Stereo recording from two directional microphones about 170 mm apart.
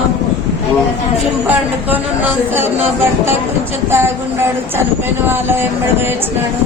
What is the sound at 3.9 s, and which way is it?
Speech, 15° right (ahead or behind).